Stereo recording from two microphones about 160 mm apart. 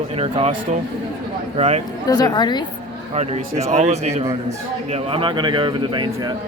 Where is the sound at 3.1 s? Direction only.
40° right (ahead or behind).